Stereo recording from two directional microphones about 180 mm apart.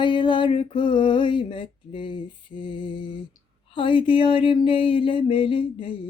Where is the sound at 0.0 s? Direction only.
25° left (ahead or behind).